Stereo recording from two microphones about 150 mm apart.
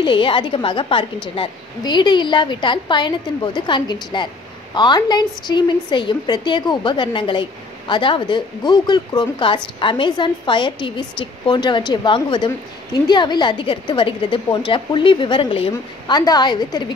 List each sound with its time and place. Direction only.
0.0 s speech: 30° left (ahead or behind)